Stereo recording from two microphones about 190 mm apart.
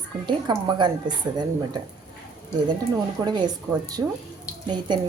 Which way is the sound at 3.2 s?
20° right (ahead or behind).